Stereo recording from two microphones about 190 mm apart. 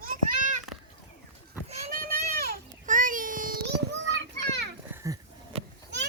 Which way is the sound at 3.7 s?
65° right (ahead or behind).